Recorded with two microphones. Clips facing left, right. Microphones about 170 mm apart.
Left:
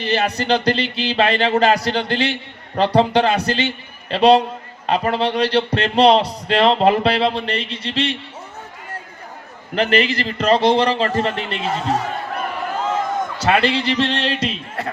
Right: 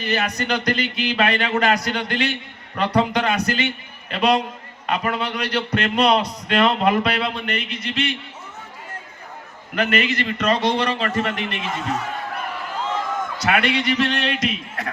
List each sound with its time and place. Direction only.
0.0 s speech: 30° left (ahead or behind)
9.7 s speech: 30° left (ahead or behind)
13.4 s speech: 30° left (ahead or behind)